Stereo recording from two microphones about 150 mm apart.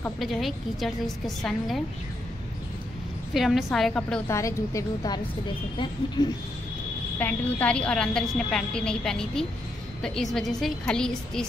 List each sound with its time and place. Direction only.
0.2 s a woman's voice: centre (ahead or behind)
3.3 s a woman's voice: centre (ahead or behind)
4.3 s a woman's voice: 20° left (ahead or behind)
7.2 s a woman's voice: 10° left (ahead or behind)